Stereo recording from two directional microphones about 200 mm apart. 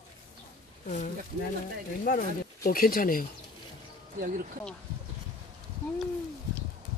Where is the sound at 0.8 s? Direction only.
40° left (ahead or behind).